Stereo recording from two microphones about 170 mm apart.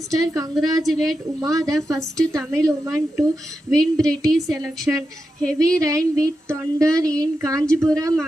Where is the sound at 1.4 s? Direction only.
20° right (ahead or behind).